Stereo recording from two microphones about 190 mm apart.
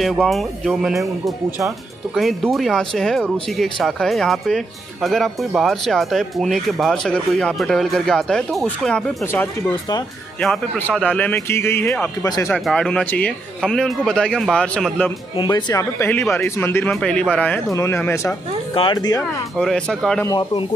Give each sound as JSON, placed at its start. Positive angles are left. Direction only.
{"t": 0.0, "sound": "speech", "side_deg": 0}
{"t": 2.1, "sound": "speech", "side_deg": 0}
{"t": 10.4, "sound": "a man's voice", "side_deg": 5}
{"t": 12.5, "sound": "speech", "side_deg": 5}
{"t": 15.3, "sound": "a man's voice", "side_deg": 20}
{"t": 18.7, "sound": "speech", "side_deg": 25}
{"t": 19.5, "sound": "speech", "side_deg": 0}
{"t": 20.2, "sound": "speech", "side_deg": 25}